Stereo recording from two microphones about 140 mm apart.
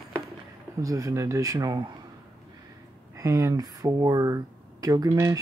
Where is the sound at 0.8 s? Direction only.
25° right (ahead or behind).